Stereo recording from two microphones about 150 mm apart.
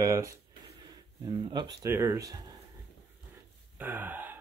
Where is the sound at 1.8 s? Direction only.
15° right (ahead or behind).